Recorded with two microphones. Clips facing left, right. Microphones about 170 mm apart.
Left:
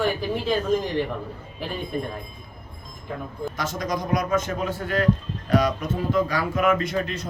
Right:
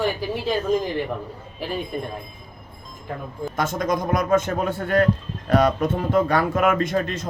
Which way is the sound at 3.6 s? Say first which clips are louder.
Right 5 dB; 50° right (ahead or behind).